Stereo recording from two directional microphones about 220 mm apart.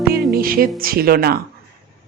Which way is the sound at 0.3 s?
40° right (ahead or behind).